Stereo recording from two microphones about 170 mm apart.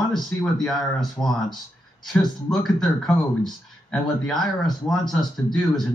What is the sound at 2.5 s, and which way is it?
Speech, centre (ahead or behind).